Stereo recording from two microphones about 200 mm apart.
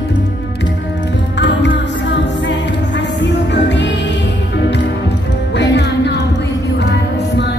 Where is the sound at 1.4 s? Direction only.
60° left (ahead or behind).